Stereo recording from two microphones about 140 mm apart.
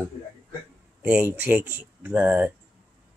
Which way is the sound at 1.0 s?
10° right (ahead or behind).